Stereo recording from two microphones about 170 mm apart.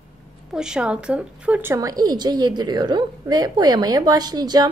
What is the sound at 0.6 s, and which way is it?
A woman's voice, 5° right (ahead or behind).